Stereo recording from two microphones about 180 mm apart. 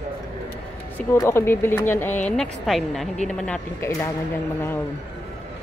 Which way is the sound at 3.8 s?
20° left (ahead or behind).